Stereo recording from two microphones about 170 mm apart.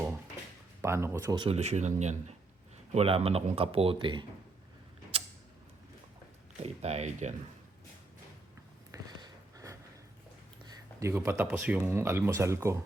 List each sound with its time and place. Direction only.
0.8 s speech: 15° right (ahead or behind)
1.4 s speech: 40° right (ahead or behind)
6.6 s speech: 40° right (ahead or behind)
8.9 s a sound: 20° right (ahead or behind)
11.1 s speech: 15° right (ahead or behind)